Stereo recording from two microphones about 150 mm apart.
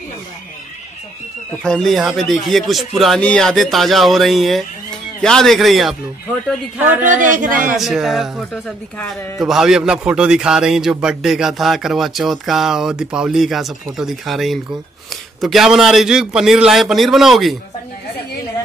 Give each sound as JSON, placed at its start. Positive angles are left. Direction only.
{"t": 1.6, "sound": "a man's voice", "side_deg": 5}
{"t": 7.0, "sound": "speech", "side_deg": -60}
{"t": 7.7, "sound": "a man's voice", "side_deg": 0}